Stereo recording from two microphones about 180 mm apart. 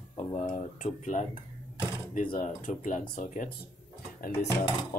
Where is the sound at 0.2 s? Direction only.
35° left (ahead or behind).